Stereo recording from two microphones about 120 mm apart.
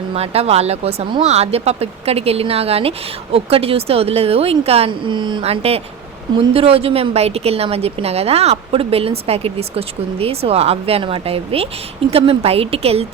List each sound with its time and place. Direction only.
0.1 s a woman's voice: 60° right (ahead or behind)
4.9 s speech: 40° right (ahead or behind)
5.4 s a woman's voice: 55° right (ahead or behind)